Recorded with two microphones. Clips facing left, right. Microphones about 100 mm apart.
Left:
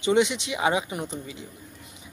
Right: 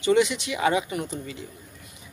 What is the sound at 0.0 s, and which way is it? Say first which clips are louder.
Speech: right 1 dB; 25° left (ahead or behind).